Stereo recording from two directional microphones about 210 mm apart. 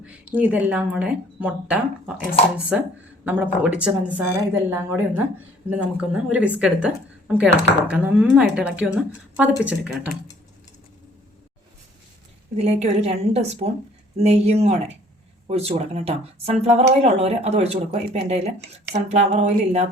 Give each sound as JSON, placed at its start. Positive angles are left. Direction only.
{"t": 0.3, "sound": "speech", "side_deg": -5}
{"t": 12.5, "sound": "speech", "side_deg": -30}